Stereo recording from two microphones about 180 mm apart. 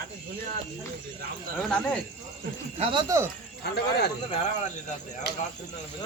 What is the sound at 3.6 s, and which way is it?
Speech, 65° left (ahead or behind).